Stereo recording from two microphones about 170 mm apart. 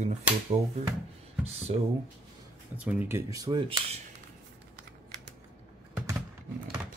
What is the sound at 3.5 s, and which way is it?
Speech, 30° right (ahead or behind).